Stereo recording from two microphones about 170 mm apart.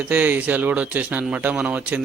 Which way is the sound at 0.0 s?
10° right (ahead or behind).